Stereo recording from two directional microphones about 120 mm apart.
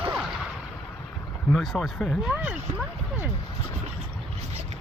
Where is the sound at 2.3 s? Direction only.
10° right (ahead or behind).